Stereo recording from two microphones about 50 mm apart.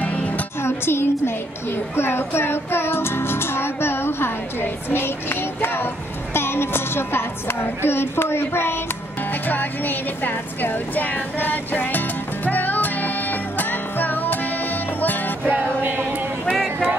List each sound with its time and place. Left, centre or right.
0.0 s music: left
0.6 s a woman's voice: left
9.3 s music: left
15.4 s male singing: right
16.4 s a sound: centre